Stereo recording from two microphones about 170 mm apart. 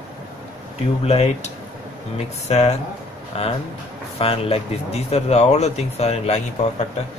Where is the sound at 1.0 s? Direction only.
40° left (ahead or behind).